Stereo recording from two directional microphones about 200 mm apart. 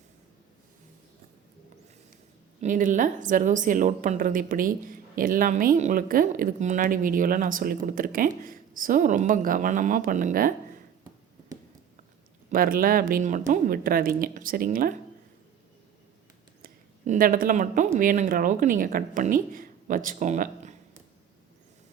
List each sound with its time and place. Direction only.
2.6 s a woman's voice: 40° right (ahead or behind)
12.5 s a woman's voice: 45° right (ahead or behind)
16.6 s speech: 45° right (ahead or behind)